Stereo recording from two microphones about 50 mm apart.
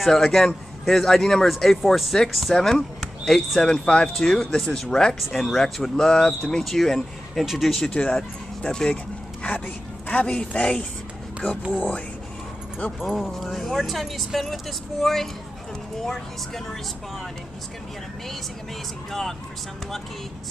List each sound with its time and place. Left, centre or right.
0.0 s speech: centre
7.7 s a woman's voice: centre; by 12.0 s left
13.3 s speech: centre